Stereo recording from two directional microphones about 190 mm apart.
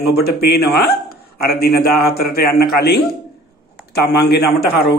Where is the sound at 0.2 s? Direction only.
55° left (ahead or behind).